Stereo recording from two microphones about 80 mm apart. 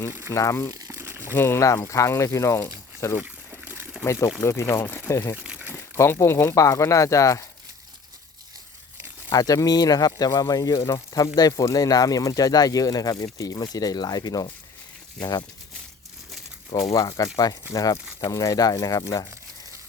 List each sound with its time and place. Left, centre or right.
0.3 s speech: left
0.7 s crumpling: right
0.9 s crumpling: right
1.3 s speech: left
1.6 s speech: left
3.2 s a sound: centre
4.0 s speech: left
5.4 s crumpling: centre
6.1 s speech: left
9.3 s speech: left
15.2 s speech: left
16.7 s speech: left